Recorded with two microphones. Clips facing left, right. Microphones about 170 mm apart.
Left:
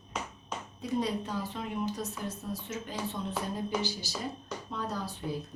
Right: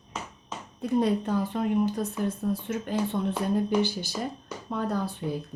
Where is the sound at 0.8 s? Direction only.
55° right (ahead or behind).